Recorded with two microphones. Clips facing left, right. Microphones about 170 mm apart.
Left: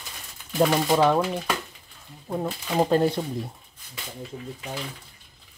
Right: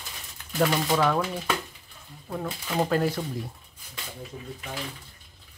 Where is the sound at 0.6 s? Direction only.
20° left (ahead or behind).